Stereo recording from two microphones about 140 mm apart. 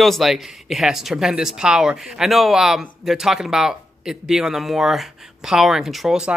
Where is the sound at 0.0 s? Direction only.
Centre (ahead or behind).